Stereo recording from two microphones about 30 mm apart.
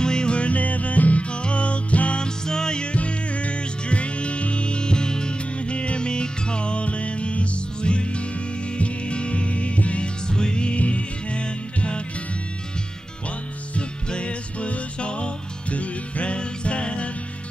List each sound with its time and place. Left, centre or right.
0.0 s music: left
0.4 s music: left
1.4 s music: left
2.1 s music: left
3.0 s music: left
5.7 s music: left
10.2 s music: left
10.8 s music: left
13.7 s music: left